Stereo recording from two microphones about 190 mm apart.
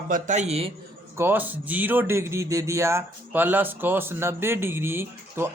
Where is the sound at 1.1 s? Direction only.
10° right (ahead or behind).